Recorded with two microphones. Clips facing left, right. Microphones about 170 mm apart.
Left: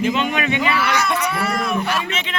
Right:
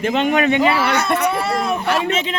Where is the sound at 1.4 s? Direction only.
30° right (ahead or behind).